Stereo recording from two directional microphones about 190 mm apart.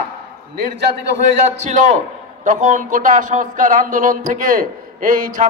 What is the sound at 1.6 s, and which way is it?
A man's voice, 40° right (ahead or behind).